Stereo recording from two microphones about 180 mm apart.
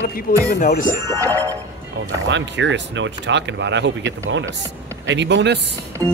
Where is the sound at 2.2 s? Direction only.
85° right.